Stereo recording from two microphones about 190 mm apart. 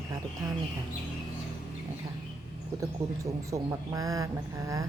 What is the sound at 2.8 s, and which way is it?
Speech, 15° right (ahead or behind).